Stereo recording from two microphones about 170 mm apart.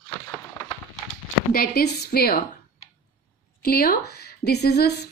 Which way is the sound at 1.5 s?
70° left (ahead or behind).